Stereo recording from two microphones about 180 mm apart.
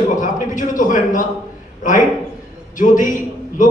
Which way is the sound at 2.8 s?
45° left (ahead or behind).